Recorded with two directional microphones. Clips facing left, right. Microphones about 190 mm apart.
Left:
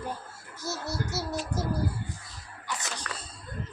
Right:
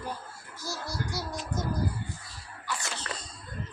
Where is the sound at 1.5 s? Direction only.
30° left (ahead or behind).